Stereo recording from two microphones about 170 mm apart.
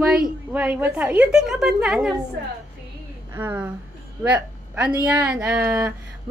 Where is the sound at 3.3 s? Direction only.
15° right (ahead or behind).